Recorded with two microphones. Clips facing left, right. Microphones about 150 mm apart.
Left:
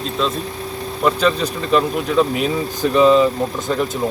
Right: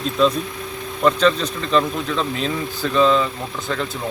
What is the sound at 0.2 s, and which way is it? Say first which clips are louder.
Speech: right 4 dB; centre (ahead or behind).